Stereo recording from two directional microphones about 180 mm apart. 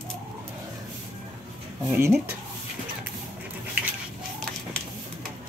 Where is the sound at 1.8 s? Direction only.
10° right (ahead or behind).